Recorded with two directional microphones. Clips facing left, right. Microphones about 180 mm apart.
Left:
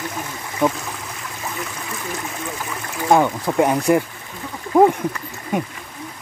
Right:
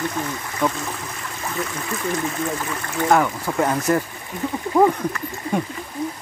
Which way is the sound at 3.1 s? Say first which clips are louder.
Left 3 dB; 15° left (ahead or behind).